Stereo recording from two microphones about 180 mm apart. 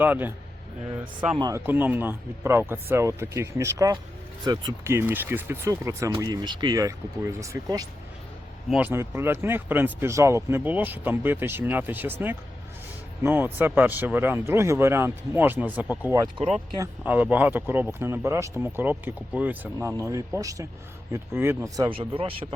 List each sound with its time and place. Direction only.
0.0 s speech: 10° right (ahead or behind)
1.4 s speech: 20° right (ahead or behind)
1.6 s speech: 10° right (ahead or behind)
21.8 s speech: 30° right (ahead or behind)